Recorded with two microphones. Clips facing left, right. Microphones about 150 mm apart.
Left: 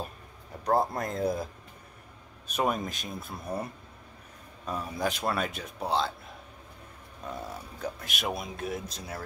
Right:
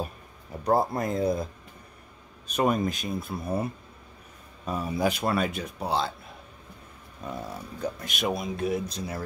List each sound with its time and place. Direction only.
0.7 s speech: 5° right (ahead or behind)
7.2 s speech: centre (ahead or behind)